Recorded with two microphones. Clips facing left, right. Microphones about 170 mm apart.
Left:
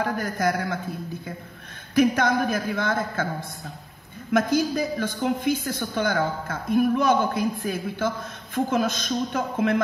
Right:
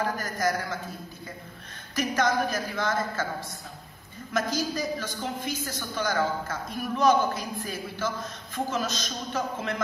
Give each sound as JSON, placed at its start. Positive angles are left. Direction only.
{"t": 0.0, "sound": "a man's voice", "side_deg": 60}
{"t": 2.0, "sound": "a woman's voice", "side_deg": 55}